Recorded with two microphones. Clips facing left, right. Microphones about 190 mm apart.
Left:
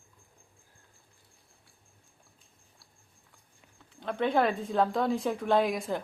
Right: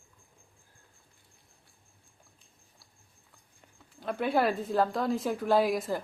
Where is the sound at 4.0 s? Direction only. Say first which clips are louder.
Left 1 dB; 5° right (ahead or behind).